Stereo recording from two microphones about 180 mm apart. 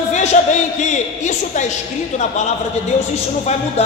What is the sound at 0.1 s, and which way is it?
A man's voice, 40° left (ahead or behind).